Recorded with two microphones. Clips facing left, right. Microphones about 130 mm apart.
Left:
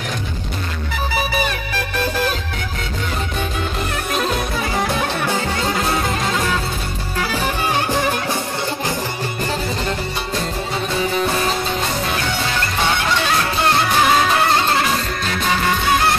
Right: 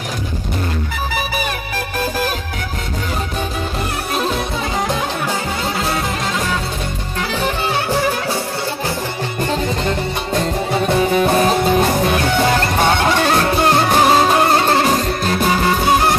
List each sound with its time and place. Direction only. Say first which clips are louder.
4.8 s music: even; 10° right (ahead or behind)
12.4 s music: right 6 dB; 45° right (ahead or behind)